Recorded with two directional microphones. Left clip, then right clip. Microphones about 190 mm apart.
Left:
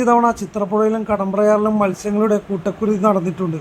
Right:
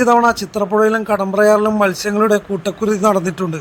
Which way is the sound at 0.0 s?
30° right (ahead or behind).